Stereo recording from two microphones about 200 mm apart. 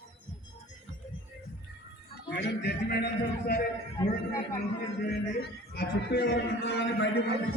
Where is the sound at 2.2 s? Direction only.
55° left (ahead or behind).